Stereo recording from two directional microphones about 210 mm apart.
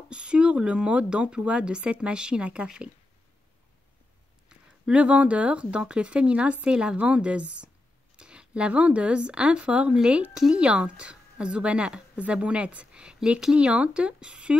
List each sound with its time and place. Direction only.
0.1 s speech: 5° right (ahead or behind)
4.5 s speech: 5° right (ahead or behind)